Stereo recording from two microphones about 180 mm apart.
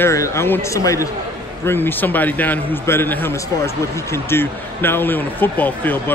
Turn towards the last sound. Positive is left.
turn(degrees=10)  # may be behind; listen again after turning